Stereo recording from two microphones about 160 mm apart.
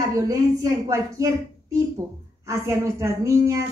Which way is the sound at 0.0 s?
20° right (ahead or behind).